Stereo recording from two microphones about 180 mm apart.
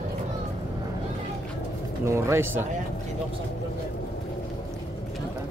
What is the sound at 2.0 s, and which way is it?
Speech, 15° right (ahead or behind).